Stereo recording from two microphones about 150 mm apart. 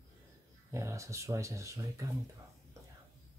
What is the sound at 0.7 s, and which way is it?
Speech, 20° right (ahead or behind).